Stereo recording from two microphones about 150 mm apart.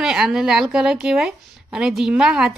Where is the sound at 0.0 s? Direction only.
5° right (ahead or behind).